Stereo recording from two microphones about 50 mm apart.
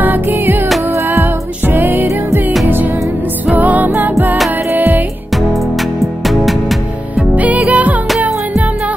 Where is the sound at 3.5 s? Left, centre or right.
Right.